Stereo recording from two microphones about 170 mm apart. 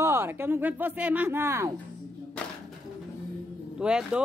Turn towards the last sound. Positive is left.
turn(degrees=-5)  # may be behind; listen again after turning